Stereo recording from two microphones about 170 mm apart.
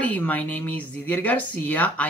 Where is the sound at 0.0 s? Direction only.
10° left (ahead or behind).